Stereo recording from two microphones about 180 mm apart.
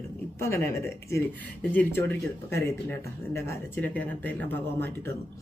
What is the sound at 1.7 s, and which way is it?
Speech, 10° left (ahead or behind).